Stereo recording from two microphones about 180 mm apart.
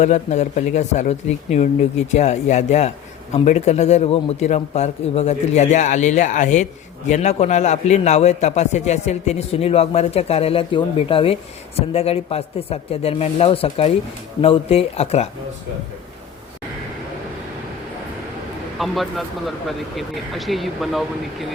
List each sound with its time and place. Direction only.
0.0 s a man's voice: 40° left (ahead or behind)
18.8 s speech: centre (ahead or behind)